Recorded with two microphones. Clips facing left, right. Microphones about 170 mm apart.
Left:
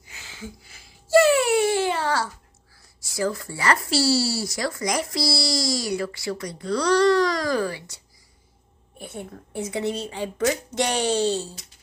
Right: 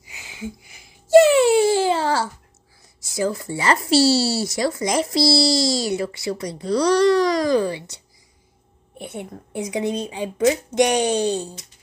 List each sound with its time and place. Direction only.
0.0 s a sound: 15° right (ahead or behind)
3.0 s speech: 20° right (ahead or behind)
9.1 s speech: 20° right (ahead or behind)